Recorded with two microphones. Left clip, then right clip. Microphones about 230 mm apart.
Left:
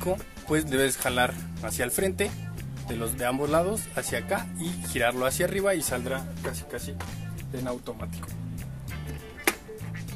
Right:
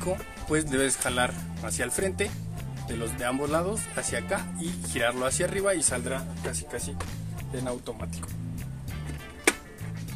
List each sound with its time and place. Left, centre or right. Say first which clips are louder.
0.0 s speech: left 2 dB; centre
7.5 s speech: even; centre